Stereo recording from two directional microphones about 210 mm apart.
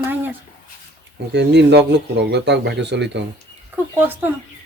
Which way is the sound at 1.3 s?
55° right (ahead or behind).